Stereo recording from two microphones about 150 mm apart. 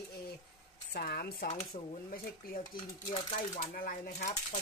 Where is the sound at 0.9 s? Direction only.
90° left.